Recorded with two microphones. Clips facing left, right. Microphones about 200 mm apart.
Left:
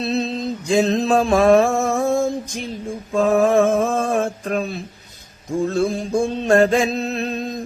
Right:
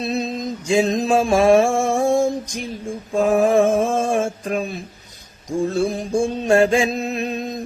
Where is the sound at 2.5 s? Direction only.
15° right (ahead or behind).